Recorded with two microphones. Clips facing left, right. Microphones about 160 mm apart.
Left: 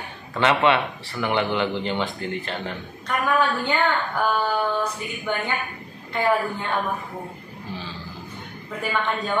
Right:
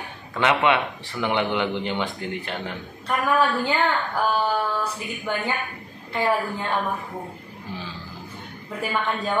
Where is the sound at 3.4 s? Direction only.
Centre (ahead or behind).